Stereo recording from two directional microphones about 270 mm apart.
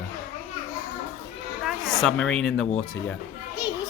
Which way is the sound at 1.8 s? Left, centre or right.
Centre.